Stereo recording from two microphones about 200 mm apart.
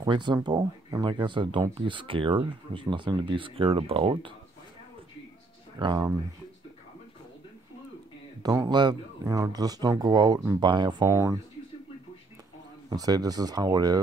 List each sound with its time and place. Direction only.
0.0 s speech: 20° right (ahead or behind)
5.8 s speech: 25° right (ahead or behind)
8.4 s speech: 20° right (ahead or behind)
12.9 s speech: 20° right (ahead or behind)